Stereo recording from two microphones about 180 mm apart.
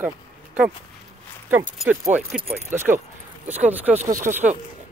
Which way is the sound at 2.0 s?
10° right (ahead or behind).